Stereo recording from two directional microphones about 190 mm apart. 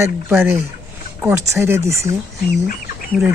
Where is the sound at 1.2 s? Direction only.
15° right (ahead or behind).